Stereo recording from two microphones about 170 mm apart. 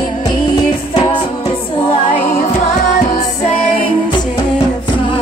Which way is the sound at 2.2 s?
45° left (ahead or behind).